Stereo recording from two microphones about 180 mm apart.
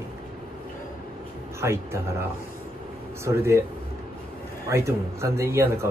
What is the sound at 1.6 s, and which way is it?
Speech, 15° right (ahead or behind).